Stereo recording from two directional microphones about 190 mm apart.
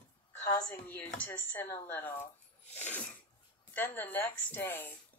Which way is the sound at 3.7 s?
10° left (ahead or behind).